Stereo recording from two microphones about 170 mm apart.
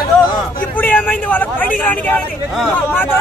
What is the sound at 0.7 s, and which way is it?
Vehicle, 10° left (ahead or behind).